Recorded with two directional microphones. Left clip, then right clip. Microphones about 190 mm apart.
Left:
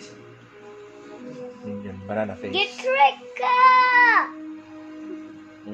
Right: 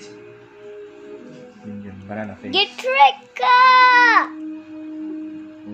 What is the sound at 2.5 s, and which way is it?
A child's voice, 45° right (ahead or behind).